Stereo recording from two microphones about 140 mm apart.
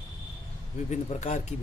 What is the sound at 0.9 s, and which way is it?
Speech, 55° left (ahead or behind).